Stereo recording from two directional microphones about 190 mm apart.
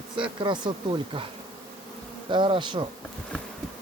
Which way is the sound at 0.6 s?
25° right (ahead or behind).